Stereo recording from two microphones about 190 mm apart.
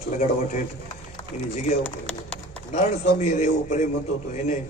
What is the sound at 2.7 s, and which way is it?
A man's voice, 35° left (ahead or behind).